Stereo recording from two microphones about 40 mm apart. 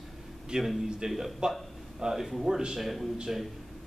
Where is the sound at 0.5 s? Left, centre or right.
Right.